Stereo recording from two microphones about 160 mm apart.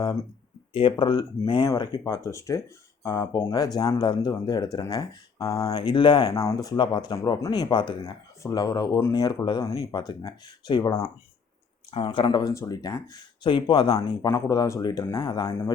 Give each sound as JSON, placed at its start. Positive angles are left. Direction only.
{"t": 0.7, "sound": "speech", "side_deg": 30}